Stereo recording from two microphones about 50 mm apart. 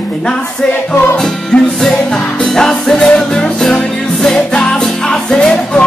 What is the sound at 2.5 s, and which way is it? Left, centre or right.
Music, centre.